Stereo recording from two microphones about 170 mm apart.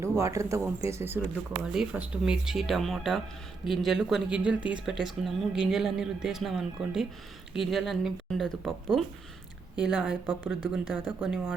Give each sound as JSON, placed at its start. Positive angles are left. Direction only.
{"t": 0.0, "sound": "speech", "side_deg": -15}